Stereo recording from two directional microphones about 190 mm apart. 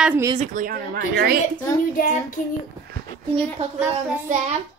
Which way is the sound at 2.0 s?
45° left (ahead or behind).